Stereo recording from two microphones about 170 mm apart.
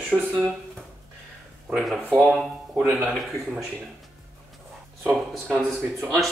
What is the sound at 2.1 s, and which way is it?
Speech, 5° right (ahead or behind).